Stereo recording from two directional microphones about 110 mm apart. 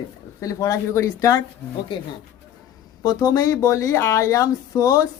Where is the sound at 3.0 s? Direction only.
35° left (ahead or behind).